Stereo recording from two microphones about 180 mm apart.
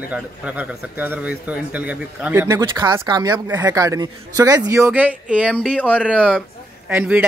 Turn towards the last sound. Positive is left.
turn(degrees=-10)  # may be behind; listen again after turning